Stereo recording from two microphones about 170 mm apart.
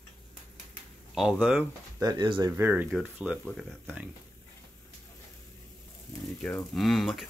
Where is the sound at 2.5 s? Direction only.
10° right (ahead or behind).